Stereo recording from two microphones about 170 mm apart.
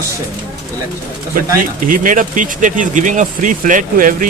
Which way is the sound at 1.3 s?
55° right (ahead or behind).